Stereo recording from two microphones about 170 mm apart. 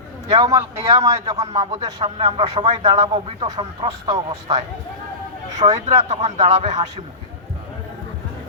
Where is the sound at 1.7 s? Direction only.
40° right (ahead or behind).